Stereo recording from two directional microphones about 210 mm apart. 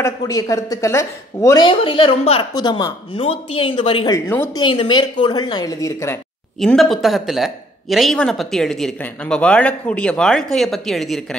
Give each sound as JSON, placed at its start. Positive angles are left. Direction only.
{"t": 0.0, "sound": "speech", "side_deg": 15}
{"t": 6.6, "sound": "speech", "side_deg": 0}